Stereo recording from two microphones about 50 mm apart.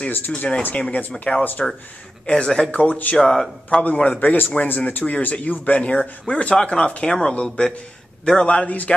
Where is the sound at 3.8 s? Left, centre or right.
Left.